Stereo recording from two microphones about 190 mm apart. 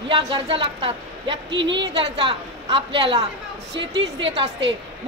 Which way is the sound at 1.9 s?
30° right (ahead or behind).